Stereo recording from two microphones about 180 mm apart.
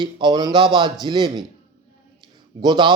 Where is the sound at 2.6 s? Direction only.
25° right (ahead or behind).